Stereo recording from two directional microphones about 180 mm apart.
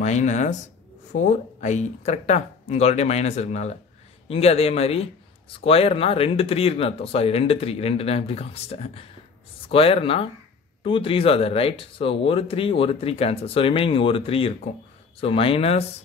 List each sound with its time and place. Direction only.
0.0 s speech: 40° left (ahead or behind)